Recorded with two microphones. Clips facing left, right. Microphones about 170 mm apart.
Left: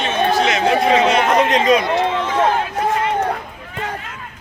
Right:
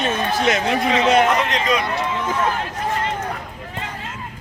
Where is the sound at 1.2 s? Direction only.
45° left (ahead or behind).